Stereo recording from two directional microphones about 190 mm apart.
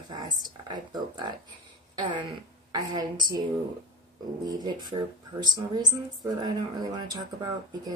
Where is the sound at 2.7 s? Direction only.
20° right (ahead or behind).